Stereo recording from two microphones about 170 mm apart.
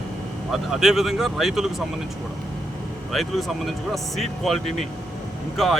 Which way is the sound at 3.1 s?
Centre (ahead or behind).